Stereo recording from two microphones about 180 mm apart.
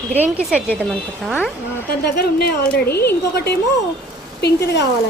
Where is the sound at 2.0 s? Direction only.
65° left (ahead or behind).